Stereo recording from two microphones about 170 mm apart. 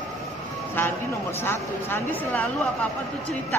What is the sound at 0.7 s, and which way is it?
Speech, 15° left (ahead or behind).